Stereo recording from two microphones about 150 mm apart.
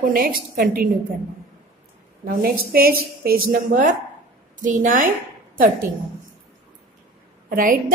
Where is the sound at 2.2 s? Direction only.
80° right.